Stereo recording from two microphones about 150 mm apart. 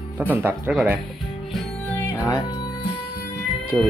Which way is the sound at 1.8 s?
15° left (ahead or behind).